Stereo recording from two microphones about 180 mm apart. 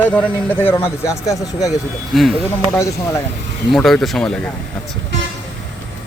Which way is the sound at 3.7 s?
Centre (ahead or behind).